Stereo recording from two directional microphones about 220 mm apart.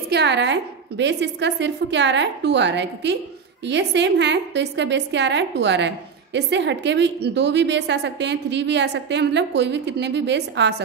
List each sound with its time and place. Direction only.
0.1 s a woman's voice: 50° right (ahead or behind)